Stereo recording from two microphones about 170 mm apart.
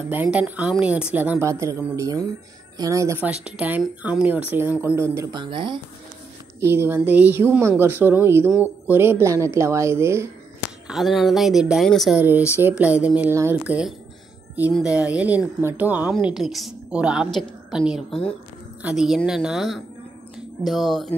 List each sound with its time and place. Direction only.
0.1 s speech: 10° right (ahead or behind); by 5.8 s 30° right (ahead or behind)
6.6 s speech: 15° right (ahead or behind)
10.9 s a woman's voice: centre (ahead or behind)